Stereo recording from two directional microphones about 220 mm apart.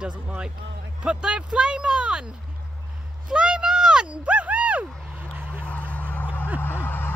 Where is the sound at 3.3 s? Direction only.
5° right (ahead or behind).